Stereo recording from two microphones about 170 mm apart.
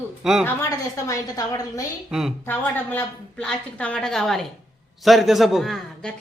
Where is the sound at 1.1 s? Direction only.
20° left (ahead or behind).